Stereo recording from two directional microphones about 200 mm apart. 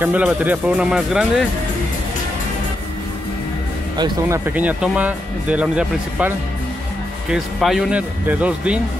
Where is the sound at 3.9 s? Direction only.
20° right (ahead or behind).